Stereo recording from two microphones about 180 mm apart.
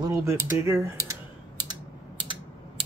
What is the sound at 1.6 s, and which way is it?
Typing, 25° right (ahead or behind).